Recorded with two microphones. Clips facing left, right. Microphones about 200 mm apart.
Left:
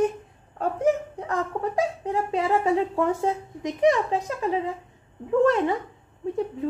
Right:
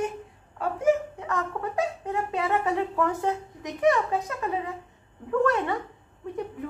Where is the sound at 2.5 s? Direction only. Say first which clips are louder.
Left 5 dB; 30° left (ahead or behind).